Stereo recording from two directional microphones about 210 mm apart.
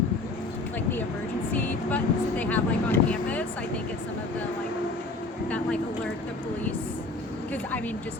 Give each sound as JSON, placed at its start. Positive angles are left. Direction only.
{"t": 1.5, "sound": "speech", "side_deg": 10}